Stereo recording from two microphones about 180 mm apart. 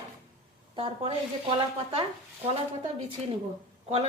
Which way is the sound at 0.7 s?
30° right (ahead or behind).